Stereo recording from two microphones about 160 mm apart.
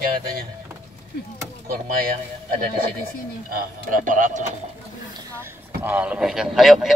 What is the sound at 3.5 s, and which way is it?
Speech, 55° right (ahead or behind).